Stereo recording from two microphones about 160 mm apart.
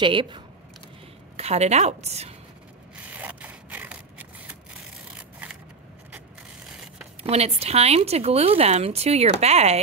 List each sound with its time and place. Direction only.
0.0 s a woman's voice: 30° right (ahead or behind)
1.3 s a woman's voice: 40° right (ahead or behind)
3.1 s scrape: 10° right (ahead or behind)
7.2 s a woman's voice: 40° right (ahead or behind)